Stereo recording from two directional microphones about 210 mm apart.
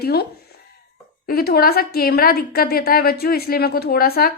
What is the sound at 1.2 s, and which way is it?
A woman's voice, 45° left (ahead or behind).